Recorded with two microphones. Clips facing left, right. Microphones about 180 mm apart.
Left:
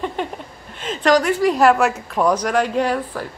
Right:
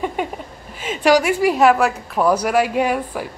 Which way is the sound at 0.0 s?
10° right (ahead or behind).